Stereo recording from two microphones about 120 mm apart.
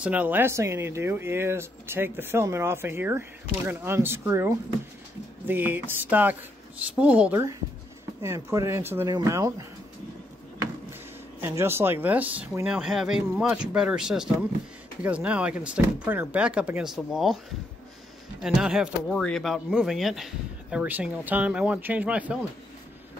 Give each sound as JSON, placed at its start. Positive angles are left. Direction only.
{"t": 0.0, "sound": "speech", "side_deg": -15}
{"t": 8.2, "sound": "speech", "side_deg": -25}
{"t": 11.4, "sound": "speech", "side_deg": -20}
{"t": 18.4, "sound": "speech", "side_deg": -5}
{"t": 20.8, "sound": "speech", "side_deg": -15}